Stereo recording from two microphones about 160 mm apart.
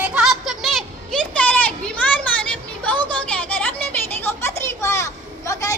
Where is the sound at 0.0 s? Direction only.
5° right (ahead or behind).